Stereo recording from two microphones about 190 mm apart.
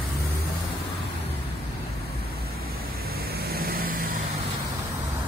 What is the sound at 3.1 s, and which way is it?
Vehicle, 55° right (ahead or behind).